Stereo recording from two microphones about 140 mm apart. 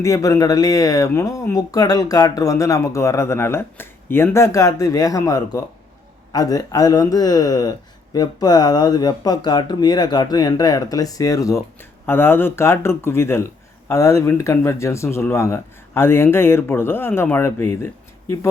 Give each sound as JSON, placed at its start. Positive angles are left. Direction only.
{"t": 0.0, "sound": "speech", "side_deg": 25}